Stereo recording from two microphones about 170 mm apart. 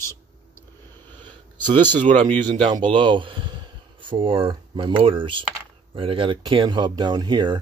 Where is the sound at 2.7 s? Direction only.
30° right (ahead or behind).